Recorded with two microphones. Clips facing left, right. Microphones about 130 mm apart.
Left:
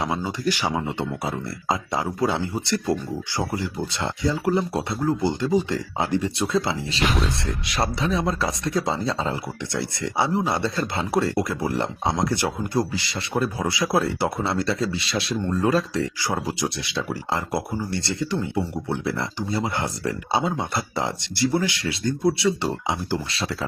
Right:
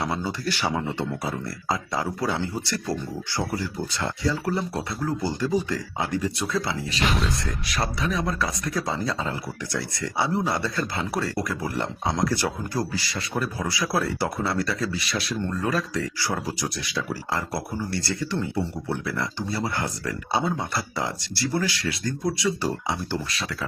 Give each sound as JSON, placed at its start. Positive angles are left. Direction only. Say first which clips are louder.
{"t": 0.0, "sound": "speech", "louder": "left 3 dB", "side_deg": 15}